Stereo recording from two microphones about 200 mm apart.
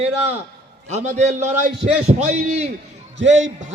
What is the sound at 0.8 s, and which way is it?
A man's voice, 35° right (ahead or behind).